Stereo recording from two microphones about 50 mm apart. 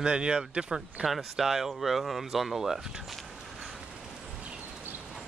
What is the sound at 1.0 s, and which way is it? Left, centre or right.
Speech, centre.